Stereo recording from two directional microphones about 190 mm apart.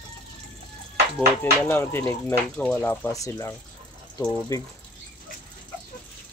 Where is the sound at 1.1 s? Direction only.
10° left (ahead or behind).